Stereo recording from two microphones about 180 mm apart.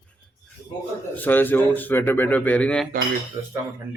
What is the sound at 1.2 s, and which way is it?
Speech, 10° left (ahead or behind).